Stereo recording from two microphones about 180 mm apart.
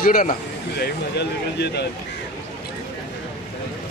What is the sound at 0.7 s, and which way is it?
Speech, 65° left (ahead or behind).